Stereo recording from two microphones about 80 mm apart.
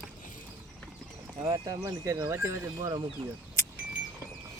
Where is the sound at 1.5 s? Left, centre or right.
Right.